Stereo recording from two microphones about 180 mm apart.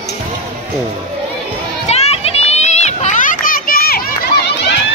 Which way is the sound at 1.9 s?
35° left (ahead or behind).